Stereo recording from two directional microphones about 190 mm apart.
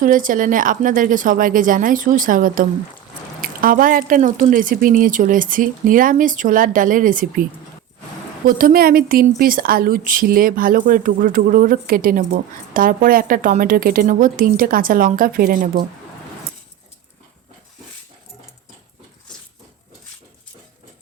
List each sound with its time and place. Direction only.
0.0 s a woman's voice: 45° right (ahead or behind)
8.4 s a woman's voice: 50° right (ahead or behind)